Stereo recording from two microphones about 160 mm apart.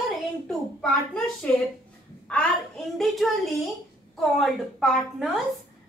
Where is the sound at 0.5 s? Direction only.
5° left (ahead or behind).